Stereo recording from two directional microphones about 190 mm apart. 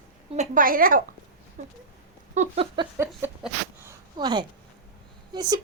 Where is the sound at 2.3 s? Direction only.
40° right (ahead or behind).